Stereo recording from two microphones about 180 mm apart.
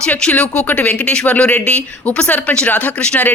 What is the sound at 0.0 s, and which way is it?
Speech, 5° left (ahead or behind).